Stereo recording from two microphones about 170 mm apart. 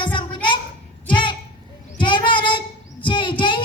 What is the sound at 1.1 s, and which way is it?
Child singing, 30° left (ahead or behind).